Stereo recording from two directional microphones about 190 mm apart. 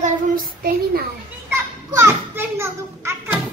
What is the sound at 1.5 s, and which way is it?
A child's voice, 15° right (ahead or behind).